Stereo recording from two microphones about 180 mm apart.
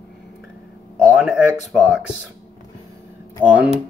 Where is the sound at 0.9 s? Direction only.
5° right (ahead or behind).